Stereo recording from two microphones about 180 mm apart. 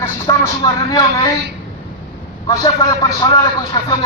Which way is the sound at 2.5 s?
20° left (ahead or behind).